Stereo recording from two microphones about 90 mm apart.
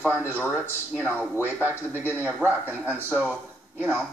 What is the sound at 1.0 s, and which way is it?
Speech, 15° right (ahead or behind).